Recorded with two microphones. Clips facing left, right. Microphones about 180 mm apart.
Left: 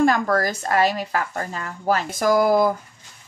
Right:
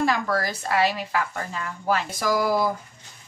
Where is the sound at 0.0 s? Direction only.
45° left (ahead or behind).